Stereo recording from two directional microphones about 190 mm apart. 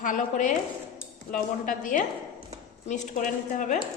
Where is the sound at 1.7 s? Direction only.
45° left (ahead or behind).